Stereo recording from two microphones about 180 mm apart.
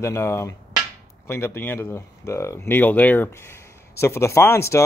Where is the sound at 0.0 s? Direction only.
15° left (ahead or behind).